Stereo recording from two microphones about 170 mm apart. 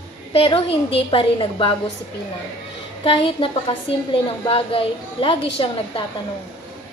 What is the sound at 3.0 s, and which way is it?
A woman's voice, 30° left (ahead or behind).